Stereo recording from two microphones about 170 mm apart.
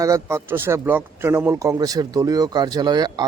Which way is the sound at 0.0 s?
20° right (ahead or behind).